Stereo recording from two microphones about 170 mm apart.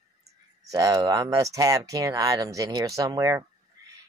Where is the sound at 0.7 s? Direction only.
20° right (ahead or behind).